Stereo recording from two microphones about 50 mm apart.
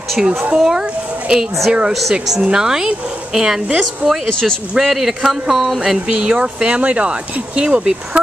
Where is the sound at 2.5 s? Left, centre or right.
Centre.